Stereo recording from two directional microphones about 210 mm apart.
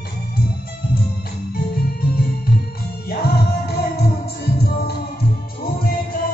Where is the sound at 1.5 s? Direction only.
45° left (ahead or behind).